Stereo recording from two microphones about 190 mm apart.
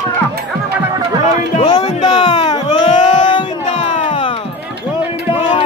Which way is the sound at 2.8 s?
40° left (ahead or behind).